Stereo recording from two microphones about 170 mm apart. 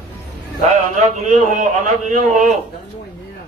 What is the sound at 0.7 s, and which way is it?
A man's voice, 45° right (ahead or behind).